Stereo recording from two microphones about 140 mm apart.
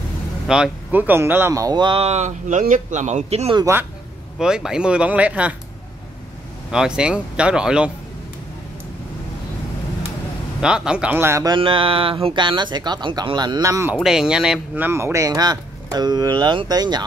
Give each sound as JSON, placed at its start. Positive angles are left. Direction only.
{"t": 0.5, "sound": "speech", "side_deg": -10}
{"t": 4.4, "sound": "speech", "side_deg": -5}
{"t": 6.7, "sound": "speech", "side_deg": -5}
{"t": 10.6, "sound": "speech", "side_deg": -5}
{"t": 11.4, "sound": "speech", "side_deg": -35}
{"t": 14.0, "sound": "speech", "side_deg": -5}
{"t": 14.9, "sound": "speech", "side_deg": -20}